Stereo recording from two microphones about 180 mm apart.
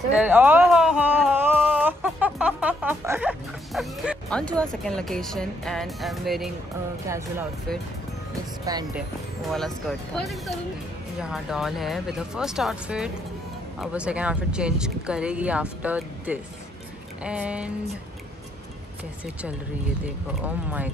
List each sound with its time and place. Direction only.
0.2 s music: 10° right (ahead or behind)
4.8 s speech: 5° left (ahead or behind)
7.1 s speech: 15° right (ahead or behind)
8.7 s speech: 20° right (ahead or behind)
9.5 s speech: 5° left (ahead or behind)
20.4 s speech: 10° right (ahead or behind)